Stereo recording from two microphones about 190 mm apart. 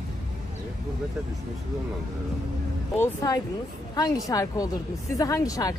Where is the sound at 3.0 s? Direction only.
15° left (ahead or behind).